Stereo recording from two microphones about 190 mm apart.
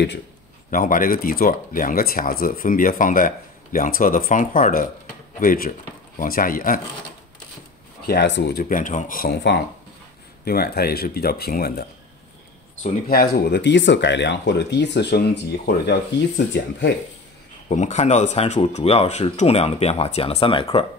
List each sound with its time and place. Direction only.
0.7 s speech: 45° left (ahead or behind)
8.1 s speech: 65° left (ahead or behind)
13.1 s speech: 60° left (ahead or behind)
17.6 s speech: 40° left (ahead or behind)